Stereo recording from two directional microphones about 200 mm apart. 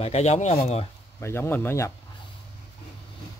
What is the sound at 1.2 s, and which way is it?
Speech, 10° left (ahead or behind).